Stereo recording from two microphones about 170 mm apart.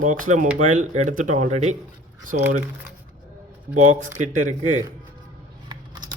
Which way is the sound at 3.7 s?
45° right (ahead or behind).